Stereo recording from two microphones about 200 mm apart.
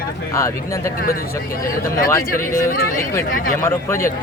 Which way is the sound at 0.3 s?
15° left (ahead or behind).